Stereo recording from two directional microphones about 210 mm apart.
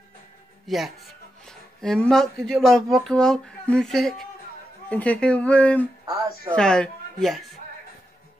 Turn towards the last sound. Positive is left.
turn(degrees=0)  # may be behind; listen again after turning